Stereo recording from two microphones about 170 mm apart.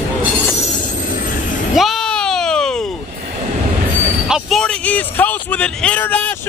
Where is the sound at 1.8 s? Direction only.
Centre (ahead or behind).